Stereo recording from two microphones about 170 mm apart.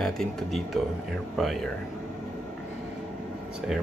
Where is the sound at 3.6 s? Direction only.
5° right (ahead or behind).